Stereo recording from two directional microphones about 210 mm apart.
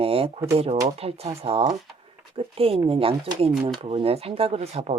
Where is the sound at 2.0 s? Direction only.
25° right (ahead or behind).